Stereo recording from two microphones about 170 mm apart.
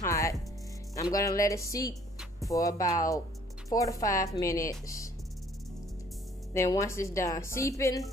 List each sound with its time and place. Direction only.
0.0 s music: 20° left (ahead or behind)
1.1 s speech: 20° left (ahead or behind)
6.5 s a woman's voice: 15° left (ahead or behind)